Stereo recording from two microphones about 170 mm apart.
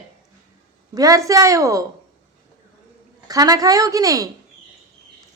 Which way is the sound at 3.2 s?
20° right (ahead or behind).